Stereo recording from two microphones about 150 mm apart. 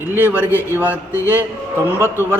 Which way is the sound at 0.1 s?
15° right (ahead or behind).